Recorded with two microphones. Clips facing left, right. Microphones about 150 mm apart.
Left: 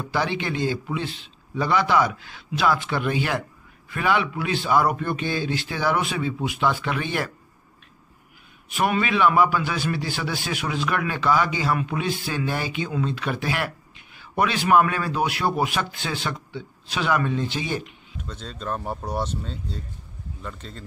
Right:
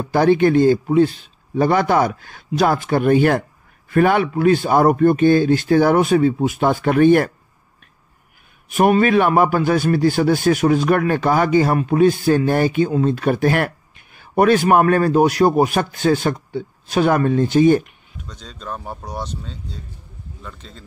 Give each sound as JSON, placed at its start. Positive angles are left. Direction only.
{"t": 0.0, "sound": "a man's voice", "side_deg": -50}
{"t": 8.6, "sound": "a man's voice", "side_deg": -45}
{"t": 18.2, "sound": "speech", "side_deg": 0}